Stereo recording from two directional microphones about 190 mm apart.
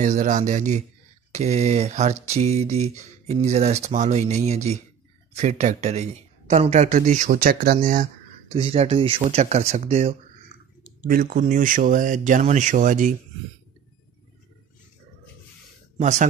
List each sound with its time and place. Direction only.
0.0 s speech: 40° right (ahead or behind)
8.5 s speech: 30° right (ahead or behind)
11.1 s speech: 50° right (ahead or behind)
16.0 s speech: 40° right (ahead or behind)